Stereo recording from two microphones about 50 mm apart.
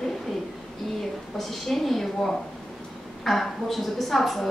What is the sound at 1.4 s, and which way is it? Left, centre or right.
A woman's voice, centre.